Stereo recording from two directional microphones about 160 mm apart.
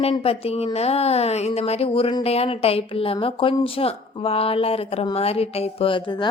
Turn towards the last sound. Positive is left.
turn(degrees=30)  # may be behind; listen again after turning